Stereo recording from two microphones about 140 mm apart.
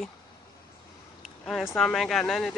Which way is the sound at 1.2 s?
Centre (ahead or behind).